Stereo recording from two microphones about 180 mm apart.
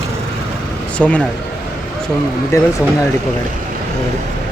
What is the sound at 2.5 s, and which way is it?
Speech, 15° left (ahead or behind).